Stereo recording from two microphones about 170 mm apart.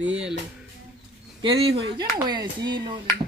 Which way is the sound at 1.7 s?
70° right (ahead or behind).